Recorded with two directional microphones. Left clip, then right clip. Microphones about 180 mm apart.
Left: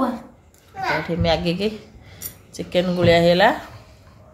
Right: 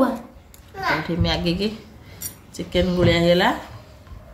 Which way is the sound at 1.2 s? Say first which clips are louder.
Left 3 dB; 25° left (ahead or behind).